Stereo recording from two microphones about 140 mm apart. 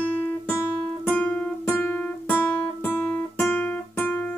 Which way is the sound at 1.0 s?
10° left (ahead or behind).